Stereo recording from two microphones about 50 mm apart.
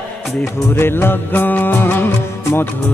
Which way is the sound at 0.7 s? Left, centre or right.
Left.